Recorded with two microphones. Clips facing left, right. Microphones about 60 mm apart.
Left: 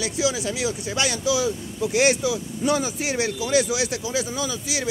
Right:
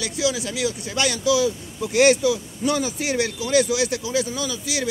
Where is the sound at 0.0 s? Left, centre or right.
Left.